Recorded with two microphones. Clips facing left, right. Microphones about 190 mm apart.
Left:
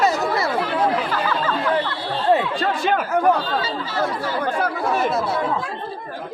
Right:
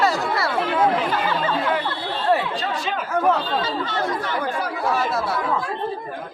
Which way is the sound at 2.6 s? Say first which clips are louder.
Left 5 dB; 55° left (ahead or behind).